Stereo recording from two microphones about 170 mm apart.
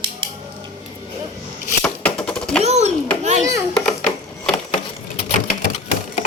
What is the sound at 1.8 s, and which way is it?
Typewriter, 5° left (ahead or behind).